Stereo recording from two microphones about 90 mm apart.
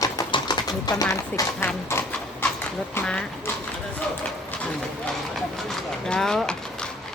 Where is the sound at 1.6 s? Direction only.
25° left (ahead or behind).